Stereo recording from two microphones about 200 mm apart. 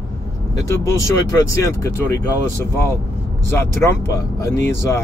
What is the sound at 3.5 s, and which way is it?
Speech, 15° left (ahead or behind).